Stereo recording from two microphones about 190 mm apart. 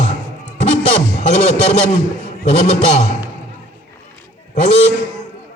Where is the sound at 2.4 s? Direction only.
35° left (ahead or behind).